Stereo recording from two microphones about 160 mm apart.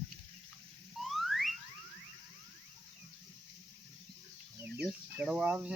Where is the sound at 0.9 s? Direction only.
Centre (ahead or behind).